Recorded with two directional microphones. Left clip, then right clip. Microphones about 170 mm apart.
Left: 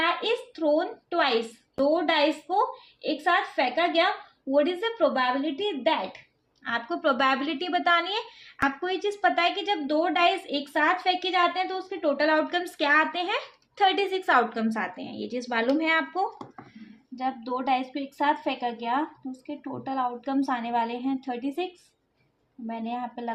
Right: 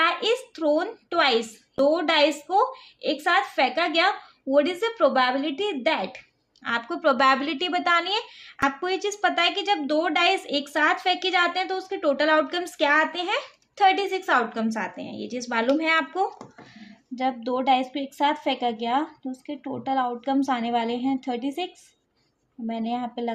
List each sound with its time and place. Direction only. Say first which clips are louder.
0.0 s a woman's voice: right 3 dB; 30° right (ahead or behind)
17.2 s a woman's voice: right 4 dB; 50° right (ahead or behind)